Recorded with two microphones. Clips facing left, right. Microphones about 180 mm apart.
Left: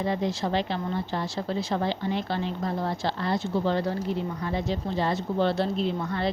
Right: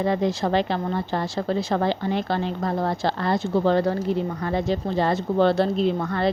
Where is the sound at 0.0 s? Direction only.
55° right (ahead or behind).